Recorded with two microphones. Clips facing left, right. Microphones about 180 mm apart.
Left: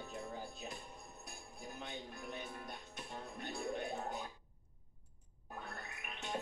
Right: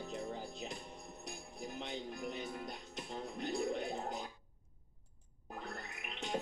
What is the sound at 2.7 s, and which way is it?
Music, 90° right.